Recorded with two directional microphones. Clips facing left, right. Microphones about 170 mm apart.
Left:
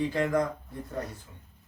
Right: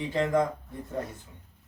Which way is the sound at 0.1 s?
20° right (ahead or behind).